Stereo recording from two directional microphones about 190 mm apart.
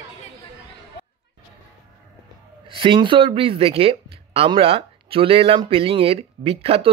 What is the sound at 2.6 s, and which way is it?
Speech, 25° right (ahead or behind).